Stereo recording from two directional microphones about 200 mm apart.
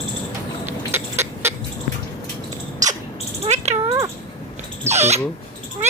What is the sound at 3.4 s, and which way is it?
Bird, 35° right (ahead or behind).